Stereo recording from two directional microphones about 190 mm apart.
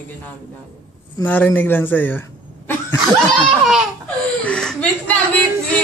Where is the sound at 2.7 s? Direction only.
10° left (ahead or behind).